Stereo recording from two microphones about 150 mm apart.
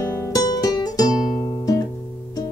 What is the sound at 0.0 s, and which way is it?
Music, 20° left (ahead or behind).